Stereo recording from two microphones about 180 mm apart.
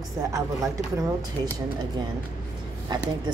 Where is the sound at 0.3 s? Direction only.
20° right (ahead or behind).